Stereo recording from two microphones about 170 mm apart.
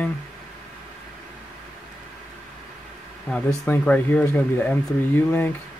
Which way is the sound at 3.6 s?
10° left (ahead or behind).